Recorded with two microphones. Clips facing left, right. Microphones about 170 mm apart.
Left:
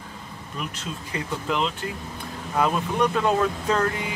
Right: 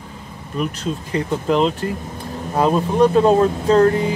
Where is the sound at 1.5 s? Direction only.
40° right (ahead or behind).